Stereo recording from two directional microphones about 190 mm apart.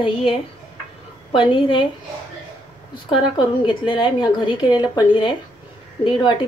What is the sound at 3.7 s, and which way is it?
A woman's voice, 25° left (ahead or behind).